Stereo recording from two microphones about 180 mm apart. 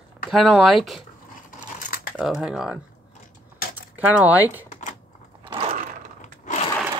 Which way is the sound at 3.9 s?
10° right (ahead or behind).